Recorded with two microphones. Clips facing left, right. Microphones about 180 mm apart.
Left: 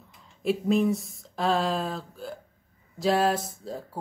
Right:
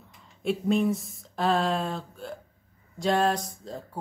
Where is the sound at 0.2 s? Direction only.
Centre (ahead or behind).